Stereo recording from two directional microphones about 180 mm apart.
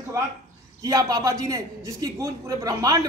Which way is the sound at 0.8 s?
20° right (ahead or behind).